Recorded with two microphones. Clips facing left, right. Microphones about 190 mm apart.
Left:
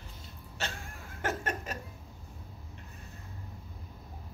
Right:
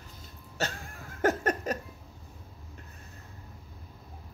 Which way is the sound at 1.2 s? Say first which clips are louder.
Right 8 dB; 40° right (ahead or behind).